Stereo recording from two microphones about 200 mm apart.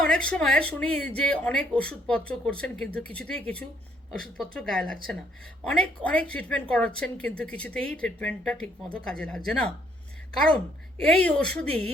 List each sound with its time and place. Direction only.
0.0 s speech: 5° left (ahead or behind)
11.0 s speech: 5° left (ahead or behind)